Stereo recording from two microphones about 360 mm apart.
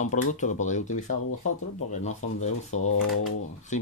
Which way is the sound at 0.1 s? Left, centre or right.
Centre.